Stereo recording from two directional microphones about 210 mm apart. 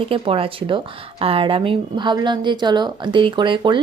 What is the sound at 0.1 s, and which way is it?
A woman's voice, 25° right (ahead or behind).